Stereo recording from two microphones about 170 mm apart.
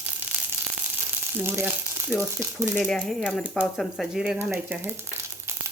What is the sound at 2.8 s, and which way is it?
Speech, 5° left (ahead or behind).